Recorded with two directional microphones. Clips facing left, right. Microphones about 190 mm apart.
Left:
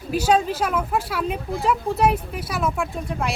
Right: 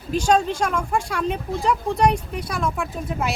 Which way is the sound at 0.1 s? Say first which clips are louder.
Even; 5° left (ahead or behind).